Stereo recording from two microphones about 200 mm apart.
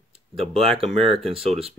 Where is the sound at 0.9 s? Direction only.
30° right (ahead or behind).